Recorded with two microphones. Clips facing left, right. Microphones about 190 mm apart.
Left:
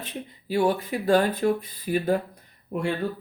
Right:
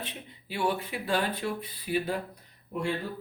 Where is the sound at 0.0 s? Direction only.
40° left (ahead or behind).